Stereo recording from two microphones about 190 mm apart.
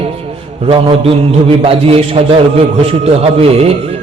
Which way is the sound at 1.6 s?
30° right (ahead or behind).